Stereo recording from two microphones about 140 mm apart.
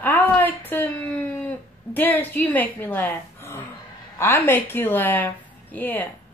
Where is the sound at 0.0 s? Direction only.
15° left (ahead or behind).